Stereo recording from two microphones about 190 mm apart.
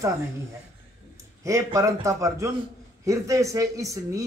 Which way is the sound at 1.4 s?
15° right (ahead or behind).